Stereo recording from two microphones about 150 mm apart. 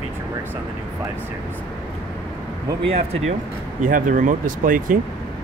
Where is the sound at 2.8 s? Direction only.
40° right (ahead or behind).